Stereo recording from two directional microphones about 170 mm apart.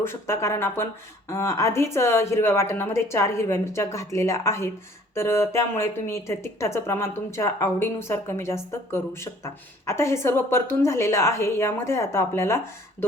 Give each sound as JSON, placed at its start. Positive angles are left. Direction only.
{"t": 0.0, "sound": "a woman's voice", "side_deg": 15}